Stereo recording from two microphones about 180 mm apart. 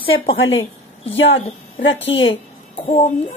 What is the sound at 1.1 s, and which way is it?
A woman's voice, 90° left.